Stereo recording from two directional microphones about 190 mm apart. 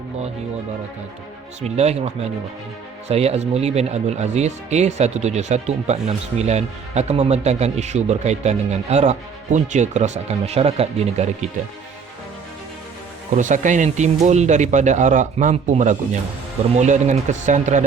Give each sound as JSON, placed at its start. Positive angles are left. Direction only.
{"t": 1.6, "sound": "speech", "side_deg": -35}
{"t": 3.1, "sound": "speech", "side_deg": -35}
{"t": 13.3, "sound": "speech", "side_deg": -40}